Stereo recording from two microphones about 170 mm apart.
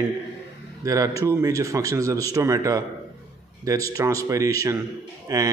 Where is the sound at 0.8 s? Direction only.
20° right (ahead or behind).